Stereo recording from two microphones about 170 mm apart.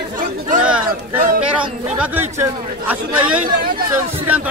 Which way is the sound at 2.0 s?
10° right (ahead or behind).